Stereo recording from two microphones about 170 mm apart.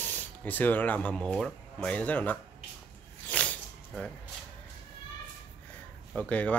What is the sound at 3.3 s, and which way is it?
Snake, 5° left (ahead or behind).